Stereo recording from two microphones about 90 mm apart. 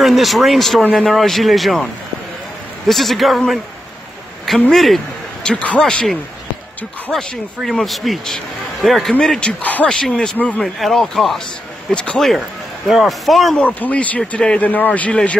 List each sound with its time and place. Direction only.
0.0 s speech: centre (ahead or behind)
2.9 s speech: centre (ahead or behind)
9.6 s speech: 15° left (ahead or behind)
10.6 s speech: 5° left (ahead or behind)
13.7 s speech: 15° left (ahead or behind)